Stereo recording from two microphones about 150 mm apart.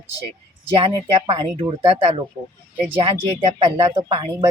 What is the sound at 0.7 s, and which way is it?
Speech, 35° right (ahead or behind).